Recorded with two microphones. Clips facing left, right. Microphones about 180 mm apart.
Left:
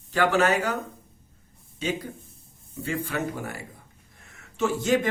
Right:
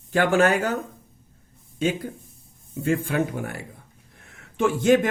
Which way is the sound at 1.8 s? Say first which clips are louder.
Right 5 dB; 50° right (ahead or behind).